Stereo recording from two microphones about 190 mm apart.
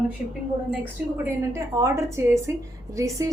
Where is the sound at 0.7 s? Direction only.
10° right (ahead or behind).